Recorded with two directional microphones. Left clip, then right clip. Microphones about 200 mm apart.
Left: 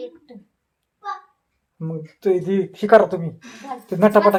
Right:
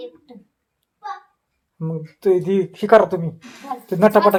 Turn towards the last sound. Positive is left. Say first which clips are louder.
# right 1 dB
turn(degrees=-15)  # may be behind; listen again after turning